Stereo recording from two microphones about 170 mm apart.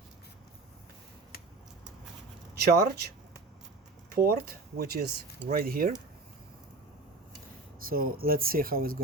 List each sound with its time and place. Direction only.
2.6 s speech: 70° right (ahead or behind)
7.8 s speech: 60° right (ahead or behind)